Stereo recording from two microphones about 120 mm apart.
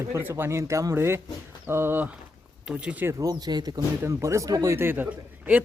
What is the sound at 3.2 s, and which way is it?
A woman's voice, 35° right (ahead or behind).